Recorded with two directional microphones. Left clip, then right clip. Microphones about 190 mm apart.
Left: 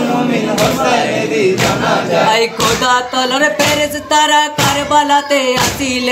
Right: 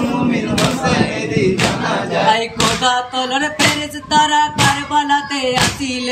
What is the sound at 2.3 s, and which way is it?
Music, 20° right (ahead or behind).